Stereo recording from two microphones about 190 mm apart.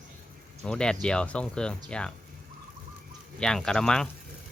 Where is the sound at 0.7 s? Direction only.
5° left (ahead or behind).